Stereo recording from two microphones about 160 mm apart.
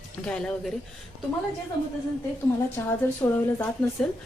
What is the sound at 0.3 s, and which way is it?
Speech, 5° left (ahead or behind).